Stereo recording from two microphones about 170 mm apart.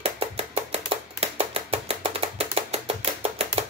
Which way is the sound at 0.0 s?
35° right (ahead or behind).